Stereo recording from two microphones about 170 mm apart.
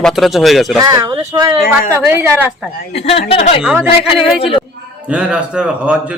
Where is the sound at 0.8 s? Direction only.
20° right (ahead or behind).